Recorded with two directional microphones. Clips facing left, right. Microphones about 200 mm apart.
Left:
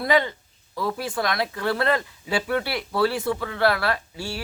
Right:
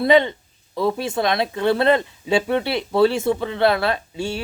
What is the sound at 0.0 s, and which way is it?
Speech, 25° right (ahead or behind).